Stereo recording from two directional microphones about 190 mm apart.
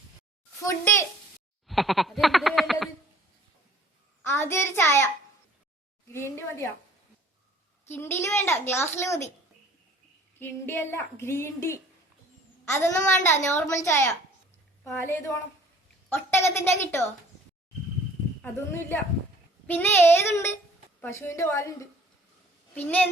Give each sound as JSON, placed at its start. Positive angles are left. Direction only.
{"t": 0.6, "sound": "a child's voice", "side_deg": 15}
{"t": 1.6, "sound": "a sound", "side_deg": 0}
{"t": 4.3, "sound": "a woman's voice", "side_deg": 15}
{"t": 6.1, "sound": "a woman's voice", "side_deg": 15}
{"t": 7.9, "sound": "a woman's voice", "side_deg": 10}
{"t": 10.4, "sound": "a woman's voice", "side_deg": 10}
{"t": 16.0, "sound": "a woman's voice", "side_deg": 10}
{"t": 18.4, "sound": "a woman's voice", "side_deg": 10}
{"t": 22.7, "sound": "a woman's voice", "side_deg": 10}